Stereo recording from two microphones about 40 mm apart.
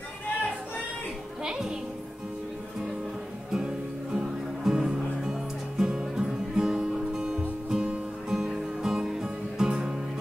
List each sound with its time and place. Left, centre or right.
1.4 s music: centre
3.5 s music: centre